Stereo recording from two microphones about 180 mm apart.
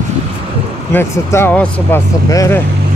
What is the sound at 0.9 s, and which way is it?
Speech, 15° left (ahead or behind).